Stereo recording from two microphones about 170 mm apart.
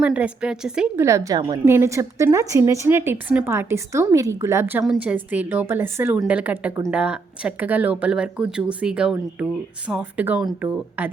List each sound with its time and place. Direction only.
0.0 s a woman's voice: 10° right (ahead or behind)
0.9 s speech: 15° right (ahead or behind)